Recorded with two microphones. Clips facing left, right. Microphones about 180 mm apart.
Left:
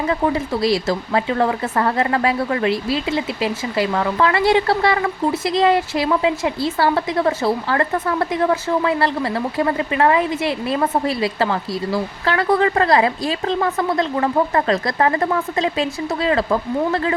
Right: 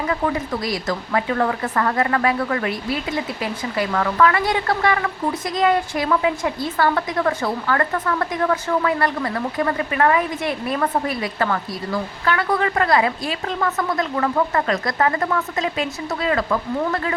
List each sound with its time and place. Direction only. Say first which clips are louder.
0.1 s a woman's voice: left 3 dB; 25° left (ahead or behind)